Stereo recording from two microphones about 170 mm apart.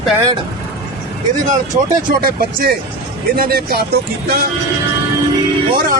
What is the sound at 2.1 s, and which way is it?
Speech, 60° right (ahead or behind).